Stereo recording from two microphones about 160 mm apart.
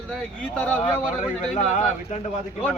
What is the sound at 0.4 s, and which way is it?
Speech, 10° left (ahead or behind).